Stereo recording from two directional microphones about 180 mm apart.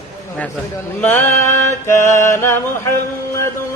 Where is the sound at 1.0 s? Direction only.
10° left (ahead or behind).